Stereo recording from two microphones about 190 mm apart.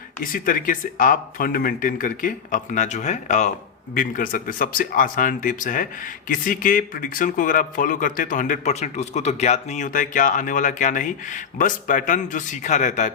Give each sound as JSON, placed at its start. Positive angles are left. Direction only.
{"t": 0.2, "sound": "speech", "side_deg": 45}